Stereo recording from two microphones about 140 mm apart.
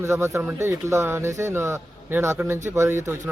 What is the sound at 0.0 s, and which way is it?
Speech, 20° right (ahead or behind).